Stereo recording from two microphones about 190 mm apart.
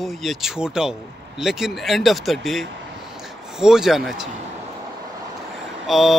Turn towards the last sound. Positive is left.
turn(degrees=0)  # may be behind; listen again after turning